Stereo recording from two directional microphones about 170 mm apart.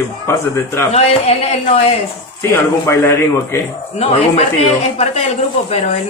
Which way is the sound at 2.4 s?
15° left (ahead or behind).